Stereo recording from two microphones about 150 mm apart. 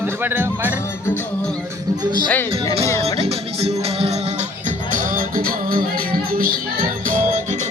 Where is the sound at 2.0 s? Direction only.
30° right (ahead or behind).